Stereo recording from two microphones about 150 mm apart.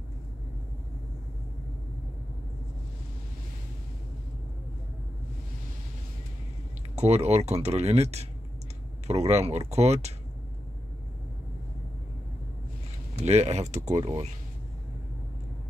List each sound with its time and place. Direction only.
7.0 s speech: 45° right (ahead or behind)
13.2 s speech: 45° right (ahead or behind)